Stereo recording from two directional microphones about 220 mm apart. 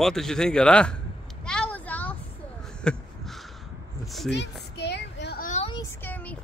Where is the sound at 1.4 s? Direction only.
5° left (ahead or behind).